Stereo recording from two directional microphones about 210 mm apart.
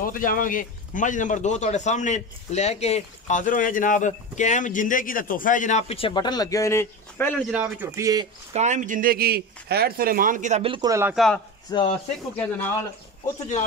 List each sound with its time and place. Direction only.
0.0 s a man's voice: 40° left (ahead or behind); by 7.4 s 10° left (ahead or behind)
7.5 s a man's voice: 10° right (ahead or behind)
8.5 s speech: 35° right (ahead or behind); by 11.1 s 15° right (ahead or behind)
11.1 s speech: 5° left (ahead or behind)
11.7 s speech: 20° left (ahead or behind)
12.4 s speech: 10° left (ahead or behind)